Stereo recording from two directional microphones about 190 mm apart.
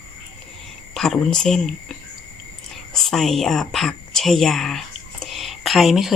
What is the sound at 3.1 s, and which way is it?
A woman's voice, centre (ahead or behind).